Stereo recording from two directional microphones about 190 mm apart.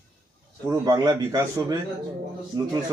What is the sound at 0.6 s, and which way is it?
Speech, 20° right (ahead or behind).